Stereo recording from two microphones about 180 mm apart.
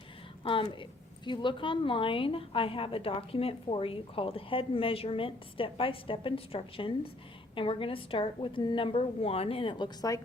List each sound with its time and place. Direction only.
0.4 s a woman's voice: 30° left (ahead or behind)